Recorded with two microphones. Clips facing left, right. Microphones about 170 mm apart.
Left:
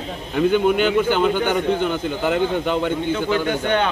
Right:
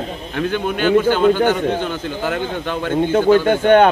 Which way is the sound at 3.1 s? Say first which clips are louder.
Right 11 dB; 50° right (ahead or behind).